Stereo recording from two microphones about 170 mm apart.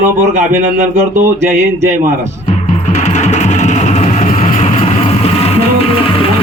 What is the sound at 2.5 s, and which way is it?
Music, 40° left (ahead or behind).